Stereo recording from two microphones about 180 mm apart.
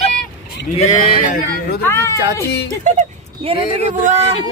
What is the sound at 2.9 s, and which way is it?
Speech, 40° right (ahead or behind).